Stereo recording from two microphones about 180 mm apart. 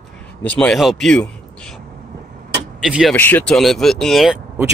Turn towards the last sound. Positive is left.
turn(degrees=0)  # may be behind; listen again after turning